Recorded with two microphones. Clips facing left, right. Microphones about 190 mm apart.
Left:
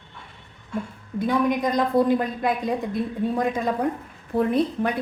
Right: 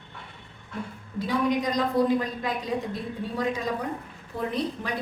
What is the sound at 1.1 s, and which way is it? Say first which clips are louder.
A woman's voice: left 3 dB; 55° left (ahead or behind).